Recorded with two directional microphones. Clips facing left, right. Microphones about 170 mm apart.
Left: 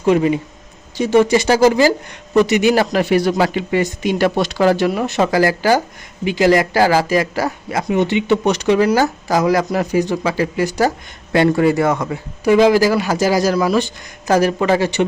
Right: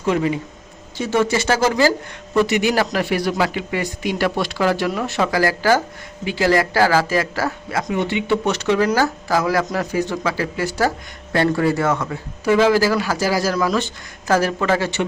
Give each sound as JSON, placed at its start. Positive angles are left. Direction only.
{"t": 0.0, "sound": "a man's voice", "side_deg": 20}